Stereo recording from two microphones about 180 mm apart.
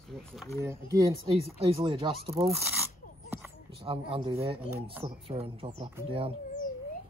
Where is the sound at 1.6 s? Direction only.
30° right (ahead or behind).